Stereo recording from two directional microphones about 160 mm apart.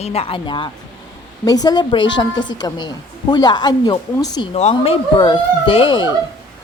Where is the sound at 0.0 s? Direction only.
40° left (ahead or behind).